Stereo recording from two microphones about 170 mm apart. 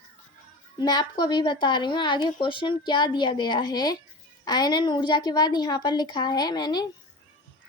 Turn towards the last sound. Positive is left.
turn(degrees=25)  # may be behind; listen again after turning